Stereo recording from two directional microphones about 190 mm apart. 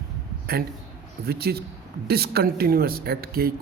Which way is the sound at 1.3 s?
55° right (ahead or behind).